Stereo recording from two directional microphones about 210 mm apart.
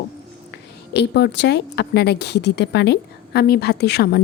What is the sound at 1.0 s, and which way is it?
Speech, 55° left (ahead or behind).